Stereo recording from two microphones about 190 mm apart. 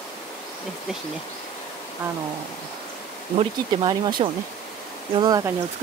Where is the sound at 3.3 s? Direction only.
25° right (ahead or behind).